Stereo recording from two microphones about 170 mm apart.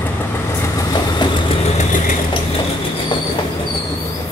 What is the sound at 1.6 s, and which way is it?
Vehicle, 40° left (ahead or behind).